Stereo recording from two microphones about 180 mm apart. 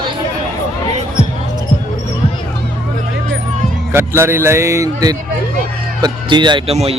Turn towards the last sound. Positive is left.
turn(degrees=-35)  # may be behind; listen again after turning